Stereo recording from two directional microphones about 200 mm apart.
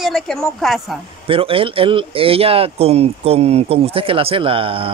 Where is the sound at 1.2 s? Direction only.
25° right (ahead or behind).